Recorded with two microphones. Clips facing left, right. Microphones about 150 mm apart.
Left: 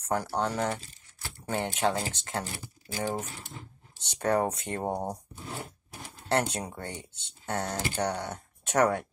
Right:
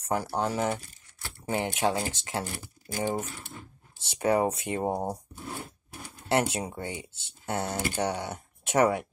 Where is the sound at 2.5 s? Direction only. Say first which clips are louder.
Right 2 dB; 50° right (ahead or behind).